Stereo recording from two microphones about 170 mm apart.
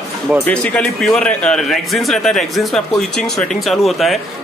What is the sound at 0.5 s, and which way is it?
A man's voice, 5° left (ahead or behind).